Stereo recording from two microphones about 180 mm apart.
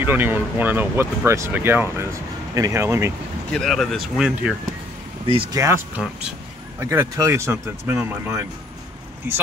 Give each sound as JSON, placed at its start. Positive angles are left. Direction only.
{"t": 0.0, "sound": "speech", "side_deg": -10}
{"t": 3.5, "sound": "speech", "side_deg": 0}
{"t": 5.2, "sound": "speech", "side_deg": -30}
{"t": 5.6, "sound": "speech", "side_deg": -15}